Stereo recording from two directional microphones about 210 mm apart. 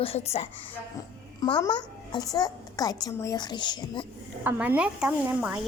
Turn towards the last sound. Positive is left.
turn(degrees=-5)  # may be behind; listen again after turning